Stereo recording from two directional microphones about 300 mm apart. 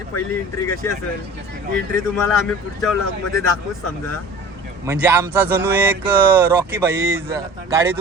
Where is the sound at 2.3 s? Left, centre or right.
Centre.